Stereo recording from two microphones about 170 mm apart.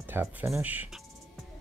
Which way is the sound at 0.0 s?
10° right (ahead or behind).